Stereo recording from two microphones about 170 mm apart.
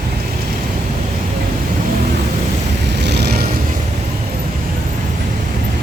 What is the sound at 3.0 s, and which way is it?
Vehicle, 80° right.